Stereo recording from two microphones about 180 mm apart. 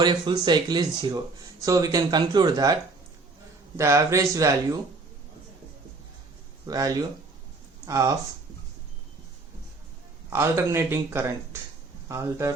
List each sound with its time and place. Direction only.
0.0 s speech: 25° right (ahead or behind)
3.8 s speech: 15° right (ahead or behind)
6.7 s speech: 20° right (ahead or behind)
10.2 s speech: 15° right (ahead or behind)